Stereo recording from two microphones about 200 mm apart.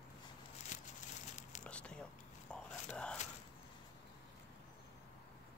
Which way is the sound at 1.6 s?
5° left (ahead or behind).